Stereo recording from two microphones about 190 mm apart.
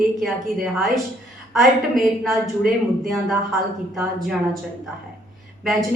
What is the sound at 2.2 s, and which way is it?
A woman's voice, centre (ahead or behind).